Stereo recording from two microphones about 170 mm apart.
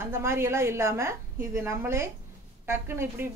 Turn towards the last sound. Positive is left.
turn(degrees=-15)  # may be behind; listen again after turning